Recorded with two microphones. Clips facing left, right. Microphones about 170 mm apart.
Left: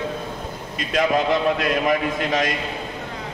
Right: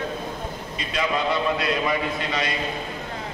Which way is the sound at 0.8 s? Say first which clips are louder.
Left 5 dB; 50° left (ahead or behind).